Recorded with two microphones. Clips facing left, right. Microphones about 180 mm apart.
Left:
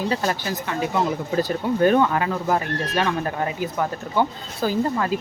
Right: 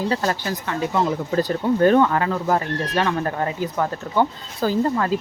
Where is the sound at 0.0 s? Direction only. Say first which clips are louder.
Right 1 dB; 15° left (ahead or behind).